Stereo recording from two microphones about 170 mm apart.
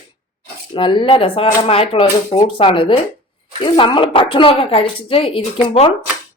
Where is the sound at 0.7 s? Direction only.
30° left (ahead or behind).